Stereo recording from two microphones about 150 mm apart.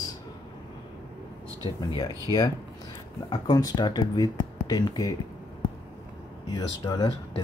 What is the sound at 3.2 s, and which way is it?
Speech, 25° left (ahead or behind).